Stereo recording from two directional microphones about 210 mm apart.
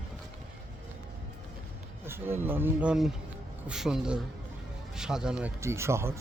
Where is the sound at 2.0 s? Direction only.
10° right (ahead or behind).